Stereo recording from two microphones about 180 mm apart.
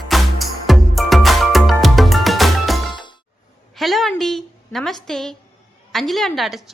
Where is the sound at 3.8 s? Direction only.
Centre (ahead or behind).